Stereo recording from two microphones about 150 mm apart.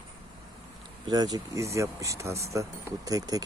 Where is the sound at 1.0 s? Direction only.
25° right (ahead or behind).